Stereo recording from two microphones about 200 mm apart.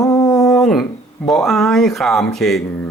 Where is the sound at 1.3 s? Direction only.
Centre (ahead or behind).